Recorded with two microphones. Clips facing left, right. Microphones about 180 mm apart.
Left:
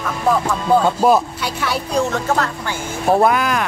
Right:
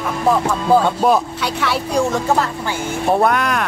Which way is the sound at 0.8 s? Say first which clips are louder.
Left 1 dB; centre (ahead or behind).